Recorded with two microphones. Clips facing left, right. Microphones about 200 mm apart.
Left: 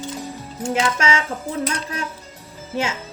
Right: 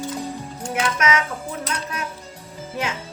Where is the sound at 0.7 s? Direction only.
30° left (ahead or behind).